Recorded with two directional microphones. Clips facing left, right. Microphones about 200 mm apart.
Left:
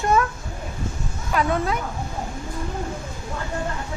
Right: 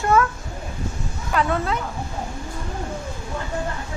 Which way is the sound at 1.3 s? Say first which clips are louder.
Even; 15° left (ahead or behind).